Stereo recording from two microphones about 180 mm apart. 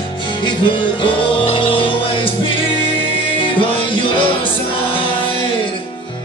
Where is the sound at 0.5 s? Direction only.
25° left (ahead or behind).